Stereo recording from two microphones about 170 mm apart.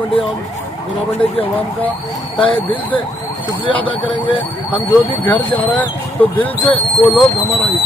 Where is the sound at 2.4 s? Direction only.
30° left (ahead or behind).